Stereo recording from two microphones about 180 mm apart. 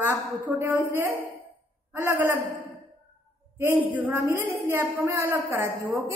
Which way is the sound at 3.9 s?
10° right (ahead or behind).